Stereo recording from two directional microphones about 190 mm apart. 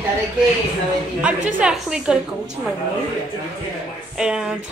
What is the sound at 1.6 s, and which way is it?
Speech, 5° right (ahead or behind).